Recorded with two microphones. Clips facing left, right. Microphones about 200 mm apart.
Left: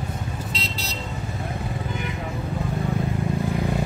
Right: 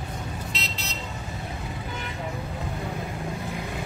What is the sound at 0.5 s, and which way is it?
Vehicle, 35° left (ahead or behind).